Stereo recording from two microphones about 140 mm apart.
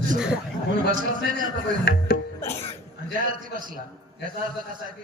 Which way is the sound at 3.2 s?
80° right.